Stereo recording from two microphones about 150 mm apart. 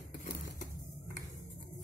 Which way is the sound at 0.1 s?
60° left (ahead or behind).